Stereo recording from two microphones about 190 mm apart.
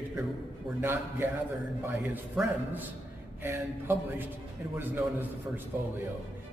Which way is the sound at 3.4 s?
15° right (ahead or behind).